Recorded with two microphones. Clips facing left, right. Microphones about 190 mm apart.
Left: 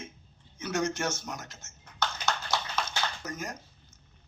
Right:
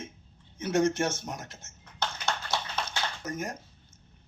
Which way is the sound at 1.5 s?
30° right (ahead or behind).